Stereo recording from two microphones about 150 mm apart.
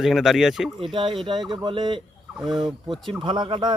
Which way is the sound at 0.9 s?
35° right (ahead or behind).